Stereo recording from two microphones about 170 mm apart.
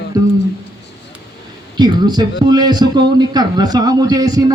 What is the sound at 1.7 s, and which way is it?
A man's voice, 25° right (ahead or behind).